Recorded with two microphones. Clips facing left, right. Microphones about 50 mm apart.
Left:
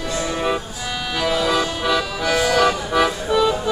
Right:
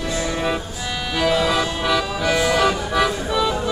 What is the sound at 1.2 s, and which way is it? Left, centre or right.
Music, centre.